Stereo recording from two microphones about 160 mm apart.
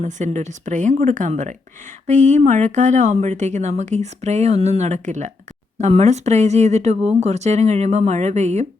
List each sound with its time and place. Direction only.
0.0 s speech: 50° right (ahead or behind)